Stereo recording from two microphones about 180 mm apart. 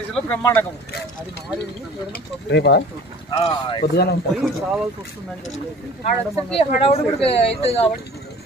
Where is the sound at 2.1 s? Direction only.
70° left (ahead or behind).